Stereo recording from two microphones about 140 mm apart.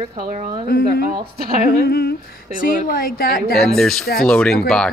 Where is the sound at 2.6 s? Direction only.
85° left.